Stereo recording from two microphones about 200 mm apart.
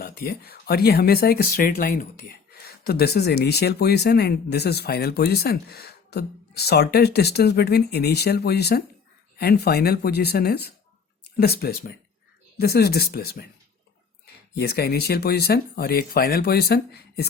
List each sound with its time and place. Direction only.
0.0 s speech: 50° left (ahead or behind)
14.5 s speech: 55° left (ahead or behind)